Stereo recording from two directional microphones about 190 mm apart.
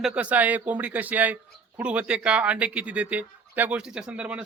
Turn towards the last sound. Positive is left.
turn(degrees=-5)  # may be behind; listen again after turning